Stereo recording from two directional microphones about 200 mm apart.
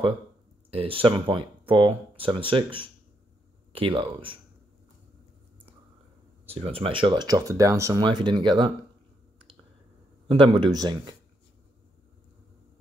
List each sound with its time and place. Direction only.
0.7 s speech: 30° right (ahead or behind)
6.4 s speech: 30° right (ahead or behind)
10.2 s speech: 25° right (ahead or behind)